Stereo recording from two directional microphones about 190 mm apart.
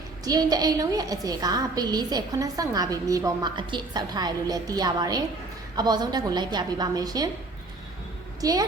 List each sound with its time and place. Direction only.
0.3 s a woman's voice: 20° right (ahead or behind)
8.4 s a woman's voice: 20° right (ahead or behind)